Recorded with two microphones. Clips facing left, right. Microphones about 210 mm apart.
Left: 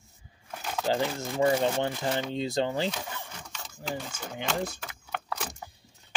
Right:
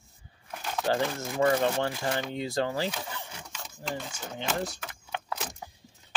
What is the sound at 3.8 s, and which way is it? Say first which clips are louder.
Speech: left 1 dB; 10° left (ahead or behind).